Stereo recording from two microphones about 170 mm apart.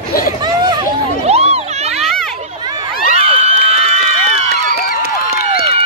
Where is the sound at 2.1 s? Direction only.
Centre (ahead or behind).